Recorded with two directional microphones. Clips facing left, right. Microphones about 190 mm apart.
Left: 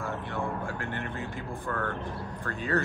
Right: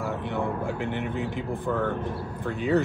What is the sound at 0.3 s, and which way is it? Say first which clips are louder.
A man's voice: right 5 dB; 15° right (ahead or behind).